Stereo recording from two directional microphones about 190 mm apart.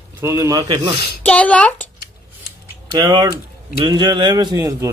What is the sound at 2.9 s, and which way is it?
Speech, 20° right (ahead or behind).